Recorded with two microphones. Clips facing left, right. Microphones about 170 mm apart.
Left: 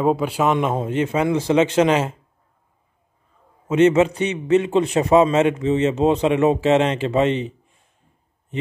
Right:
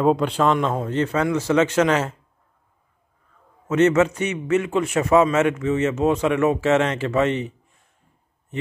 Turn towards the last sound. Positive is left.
turn(degrees=20)  # may be behind; listen again after turning